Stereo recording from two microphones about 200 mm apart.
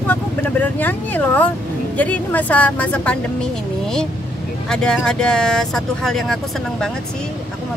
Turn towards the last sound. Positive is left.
turn(degrees=5)  # may be behind; listen again after turning